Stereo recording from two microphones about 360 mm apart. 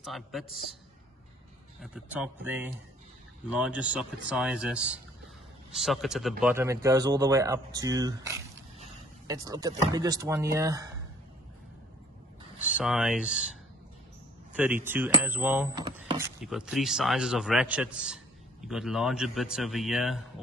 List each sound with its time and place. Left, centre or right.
0.0 s a man's voice: centre
1.8 s a man's voice: centre
12.7 s a man's voice: centre
14.6 s a man's voice: centre